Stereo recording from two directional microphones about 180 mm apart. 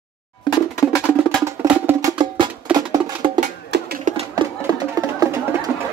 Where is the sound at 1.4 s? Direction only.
15° right (ahead or behind).